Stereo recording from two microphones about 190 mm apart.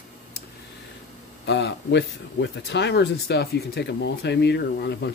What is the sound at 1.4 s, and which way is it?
Speech, 65° left (ahead or behind).